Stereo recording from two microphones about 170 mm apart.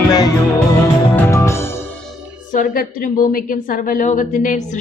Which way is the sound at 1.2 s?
15° left (ahead or behind).